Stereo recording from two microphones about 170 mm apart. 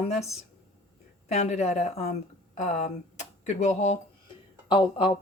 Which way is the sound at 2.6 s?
45° left (ahead or behind).